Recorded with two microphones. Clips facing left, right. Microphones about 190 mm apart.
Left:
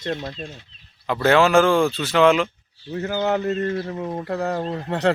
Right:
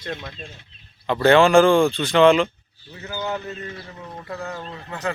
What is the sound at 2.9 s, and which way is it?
Speech, 65° left (ahead or behind).